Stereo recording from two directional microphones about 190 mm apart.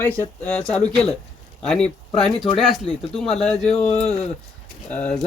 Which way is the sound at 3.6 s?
35° left (ahead or behind).